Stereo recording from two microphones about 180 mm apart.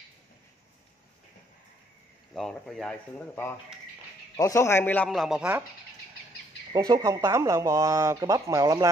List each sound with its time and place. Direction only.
2.3 s a man's voice: 5° left (ahead or behind)
6.7 s speech: 20° right (ahead or behind)